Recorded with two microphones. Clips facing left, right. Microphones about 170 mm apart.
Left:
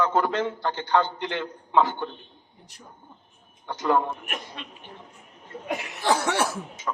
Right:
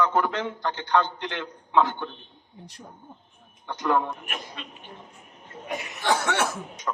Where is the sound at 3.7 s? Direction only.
10° left (ahead or behind).